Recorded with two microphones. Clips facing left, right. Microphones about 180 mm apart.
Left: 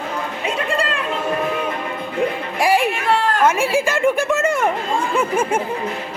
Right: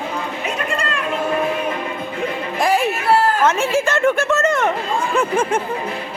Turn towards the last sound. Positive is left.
turn(degrees=10)  # may be behind; listen again after turning